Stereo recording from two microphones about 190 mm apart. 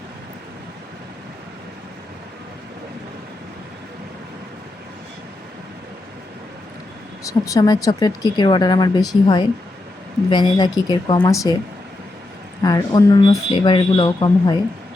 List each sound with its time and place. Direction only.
7.3 s speech: 15° left (ahead or behind)
12.6 s speech: 20° left (ahead or behind)